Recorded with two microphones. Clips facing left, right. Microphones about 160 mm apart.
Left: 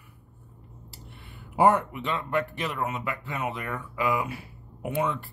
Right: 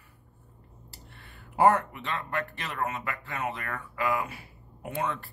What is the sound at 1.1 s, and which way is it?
Speech, 15° left (ahead or behind).